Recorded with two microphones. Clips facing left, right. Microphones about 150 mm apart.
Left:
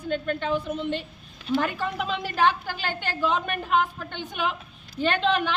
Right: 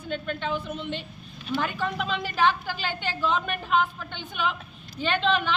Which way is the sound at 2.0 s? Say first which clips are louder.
Left 1 dB; 45° left (ahead or behind).